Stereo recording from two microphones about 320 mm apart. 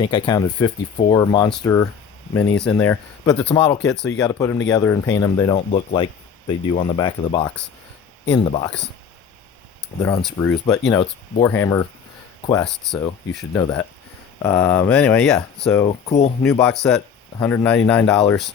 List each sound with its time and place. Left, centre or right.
0.0 s speech: centre
10.0 s speech: centre
15.9 s speech: centre
16.4 s speech: centre